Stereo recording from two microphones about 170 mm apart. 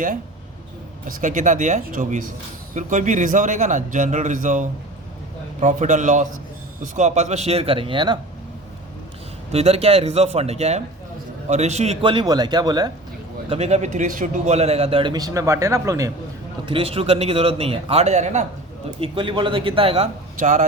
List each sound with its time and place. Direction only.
1.0 s a man's voice: 50° right (ahead or behind); by 8.2 s 30° right (ahead or behind)
9.5 s a man's voice: 35° right (ahead or behind)
12.0 s speech: 25° right (ahead or behind)
13.5 s speech: 40° right (ahead or behind); by 16.1 s 20° right (ahead or behind)
16.6 s speech: 30° right (ahead or behind)
18.9 s speech: 30° right (ahead or behind)
20.4 s a man's voice: 45° right (ahead or behind)